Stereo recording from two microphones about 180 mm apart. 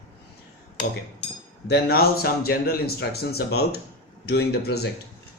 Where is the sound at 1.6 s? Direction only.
60° left (ahead or behind).